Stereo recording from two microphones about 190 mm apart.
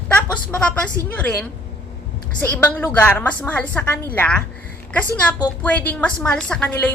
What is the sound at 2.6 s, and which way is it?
A woman's voice, 10° left (ahead or behind).